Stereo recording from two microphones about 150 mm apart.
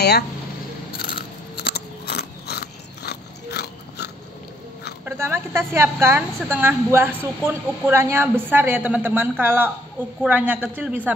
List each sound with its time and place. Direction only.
1.6 s biting: 90° left
5.0 s a woman's voice: 15° right (ahead or behind)